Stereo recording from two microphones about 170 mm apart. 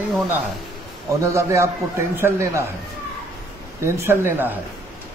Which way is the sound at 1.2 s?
15° right (ahead or behind).